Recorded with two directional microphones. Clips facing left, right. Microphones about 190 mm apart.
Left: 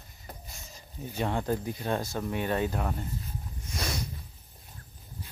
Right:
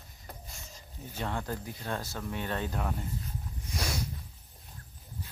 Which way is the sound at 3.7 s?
5° right (ahead or behind).